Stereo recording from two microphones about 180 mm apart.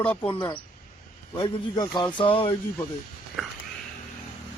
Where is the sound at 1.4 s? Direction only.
30° left (ahead or behind).